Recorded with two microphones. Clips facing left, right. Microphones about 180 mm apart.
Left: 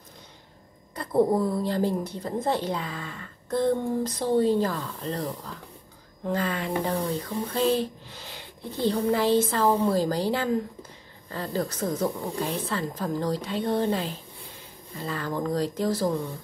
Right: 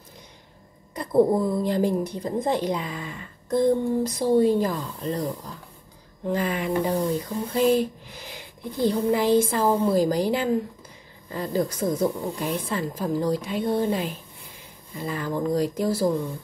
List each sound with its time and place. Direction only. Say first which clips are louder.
0.9 s speech: right 3 dB; 15° right (ahead or behind)
6.3 s speech: right 3 dB; 15° right (ahead or behind)